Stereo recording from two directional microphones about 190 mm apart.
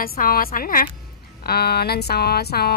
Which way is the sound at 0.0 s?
50° left (ahead or behind).